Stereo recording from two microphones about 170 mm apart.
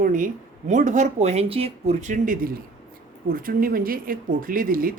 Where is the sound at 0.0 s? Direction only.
55° right (ahead or behind).